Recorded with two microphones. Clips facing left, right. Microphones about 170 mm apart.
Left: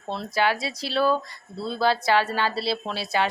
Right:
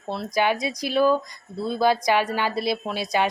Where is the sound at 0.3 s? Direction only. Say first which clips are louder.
Right 2 dB; 20° right (ahead or behind).